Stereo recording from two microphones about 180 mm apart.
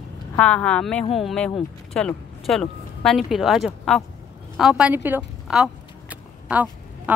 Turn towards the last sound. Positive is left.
turn(degrees=-10)  # may be behind; listen again after turning